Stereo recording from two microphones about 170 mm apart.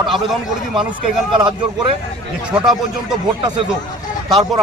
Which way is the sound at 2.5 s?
5° right (ahead or behind).